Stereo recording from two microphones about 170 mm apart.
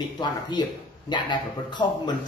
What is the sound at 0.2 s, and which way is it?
Speech, 25° left (ahead or behind).